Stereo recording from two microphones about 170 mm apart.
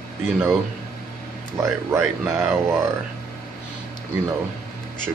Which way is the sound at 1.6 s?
15° right (ahead or behind).